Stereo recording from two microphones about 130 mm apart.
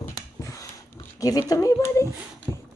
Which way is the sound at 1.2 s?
25° left (ahead or behind).